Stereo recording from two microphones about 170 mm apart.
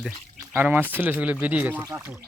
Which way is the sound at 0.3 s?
10° right (ahead or behind).